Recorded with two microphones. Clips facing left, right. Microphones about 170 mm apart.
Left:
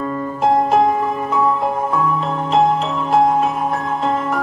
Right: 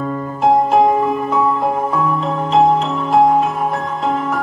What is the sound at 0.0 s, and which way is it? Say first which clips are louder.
Music: right 2 dB; 5° right (ahead or behind).